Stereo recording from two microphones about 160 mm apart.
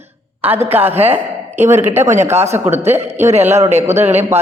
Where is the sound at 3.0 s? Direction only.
45° right (ahead or behind).